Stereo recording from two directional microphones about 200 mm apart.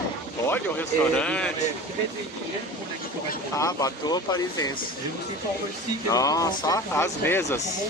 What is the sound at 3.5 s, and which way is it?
Speech, 15° left (ahead or behind).